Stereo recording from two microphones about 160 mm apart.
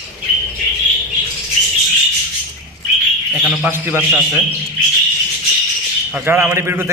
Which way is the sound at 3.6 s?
15° right (ahead or behind).